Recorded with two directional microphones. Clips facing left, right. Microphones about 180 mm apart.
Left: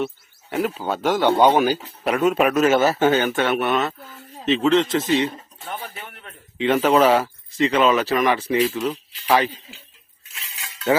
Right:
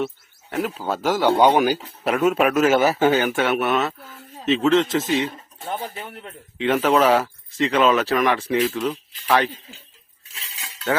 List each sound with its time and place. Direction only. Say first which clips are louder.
0.5 s speech: left 1 dB; centre (ahead or behind)
5.8 s speech: right 4 dB; 30° right (ahead or behind)
6.6 s speech: left 1 dB; centre (ahead or behind)